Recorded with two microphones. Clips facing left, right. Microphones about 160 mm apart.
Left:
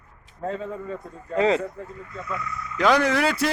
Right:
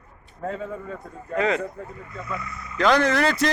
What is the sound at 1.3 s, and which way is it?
Speech, 30° left (ahead or behind).